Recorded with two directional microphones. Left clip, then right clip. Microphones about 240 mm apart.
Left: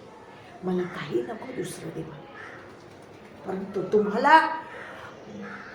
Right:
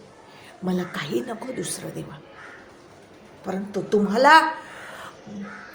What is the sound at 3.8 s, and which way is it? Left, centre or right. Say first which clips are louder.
Speech: right 4 dB; right.